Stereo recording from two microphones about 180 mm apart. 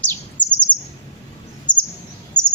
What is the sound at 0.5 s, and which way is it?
Bird, 5° left (ahead or behind).